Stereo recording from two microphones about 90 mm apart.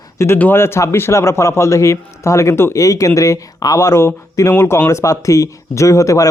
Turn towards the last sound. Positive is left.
turn(degrees=35)  # may be behind; listen again after turning